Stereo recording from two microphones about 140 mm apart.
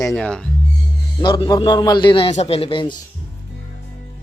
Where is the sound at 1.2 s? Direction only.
30° left (ahead or behind).